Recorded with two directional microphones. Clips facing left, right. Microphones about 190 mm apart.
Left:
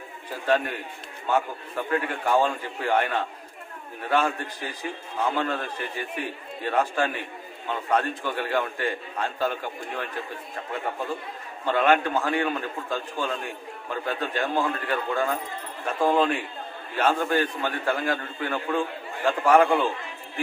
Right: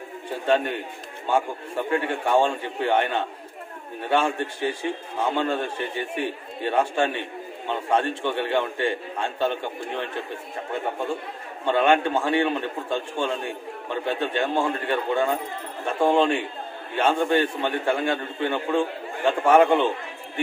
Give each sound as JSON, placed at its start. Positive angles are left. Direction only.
{"t": 0.3, "sound": "a man's voice", "side_deg": -25}